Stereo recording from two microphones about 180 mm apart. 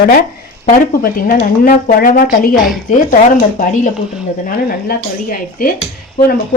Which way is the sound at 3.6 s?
45° left (ahead or behind).